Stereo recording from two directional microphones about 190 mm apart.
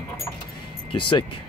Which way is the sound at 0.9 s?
25° left (ahead or behind).